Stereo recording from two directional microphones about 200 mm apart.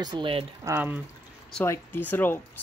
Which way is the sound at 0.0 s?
20° right (ahead or behind).